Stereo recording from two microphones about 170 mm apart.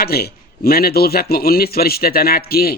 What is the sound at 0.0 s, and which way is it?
A man's voice, 65° left (ahead or behind).